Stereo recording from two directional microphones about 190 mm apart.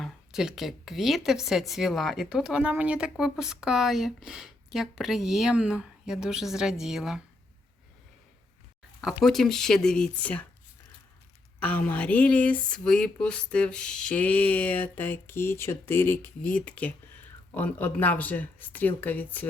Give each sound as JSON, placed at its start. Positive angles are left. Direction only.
{"t": 0.0, "sound": "speech", "side_deg": 0}
{"t": 9.0, "sound": "speech", "side_deg": 0}
{"t": 11.6, "sound": "speech", "side_deg": 10}